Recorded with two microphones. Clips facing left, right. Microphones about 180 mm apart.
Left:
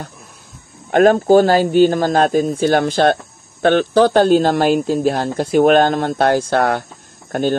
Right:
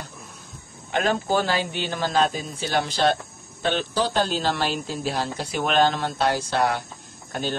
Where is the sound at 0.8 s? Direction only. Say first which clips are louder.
Left 12 dB; 50° left (ahead or behind).